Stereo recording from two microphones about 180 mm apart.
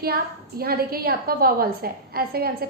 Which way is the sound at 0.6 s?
55° right (ahead or behind).